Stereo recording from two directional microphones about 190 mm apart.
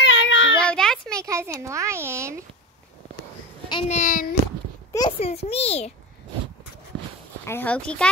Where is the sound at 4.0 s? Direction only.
45° left (ahead or behind).